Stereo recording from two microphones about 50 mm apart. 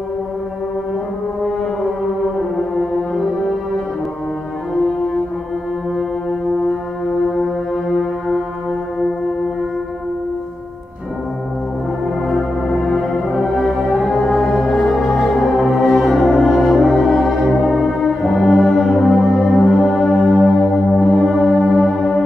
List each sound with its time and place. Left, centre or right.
7.3 s music: centre
12.3 s music: centre